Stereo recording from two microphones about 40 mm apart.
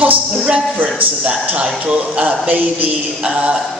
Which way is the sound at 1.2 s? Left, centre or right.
Right.